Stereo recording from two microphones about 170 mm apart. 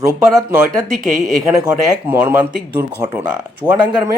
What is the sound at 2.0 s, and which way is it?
Speech, 10° right (ahead or behind).